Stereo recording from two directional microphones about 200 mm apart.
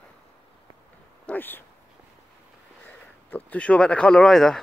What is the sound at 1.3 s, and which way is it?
Speech, 10° left (ahead or behind).